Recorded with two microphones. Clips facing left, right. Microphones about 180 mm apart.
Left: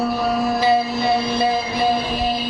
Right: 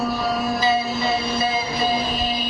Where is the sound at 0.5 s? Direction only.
60° left (ahead or behind).